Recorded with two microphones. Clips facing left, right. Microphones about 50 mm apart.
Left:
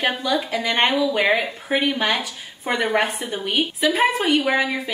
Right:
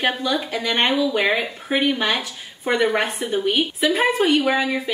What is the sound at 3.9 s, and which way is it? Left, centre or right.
Speech, left.